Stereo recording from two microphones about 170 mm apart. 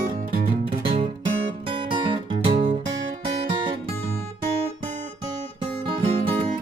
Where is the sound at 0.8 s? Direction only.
30° right (ahead or behind).